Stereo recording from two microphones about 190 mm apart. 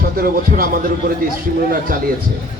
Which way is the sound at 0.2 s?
50° right (ahead or behind).